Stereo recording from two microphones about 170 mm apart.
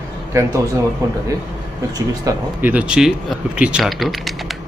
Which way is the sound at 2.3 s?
10° right (ahead or behind).